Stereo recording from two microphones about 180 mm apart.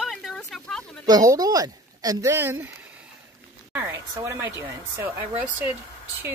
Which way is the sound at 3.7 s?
15° right (ahead or behind).